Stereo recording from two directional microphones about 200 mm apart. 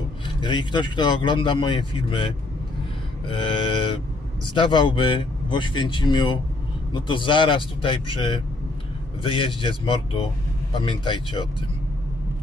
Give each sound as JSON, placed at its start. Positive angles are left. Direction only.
{"t": 0.4, "sound": "speech", "side_deg": 25}